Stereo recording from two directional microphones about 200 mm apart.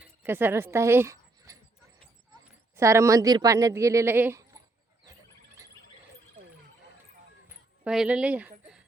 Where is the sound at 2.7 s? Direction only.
15° right (ahead or behind).